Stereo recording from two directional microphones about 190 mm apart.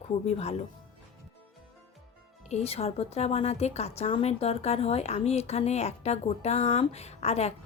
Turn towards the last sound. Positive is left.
turn(degrees=35)  # may be behind; listen again after turning